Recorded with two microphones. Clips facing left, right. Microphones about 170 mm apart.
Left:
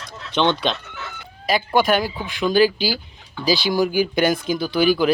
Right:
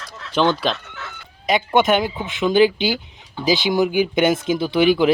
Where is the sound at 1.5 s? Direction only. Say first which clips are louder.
Right 2 dB; 20° right (ahead or behind).